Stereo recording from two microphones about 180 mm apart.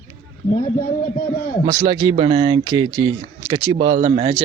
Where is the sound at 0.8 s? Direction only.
50° left (ahead or behind).